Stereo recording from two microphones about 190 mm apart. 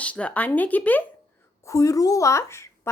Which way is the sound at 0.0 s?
5° left (ahead or behind).